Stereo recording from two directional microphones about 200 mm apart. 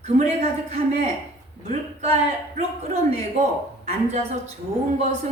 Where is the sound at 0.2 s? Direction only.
35° right (ahead or behind).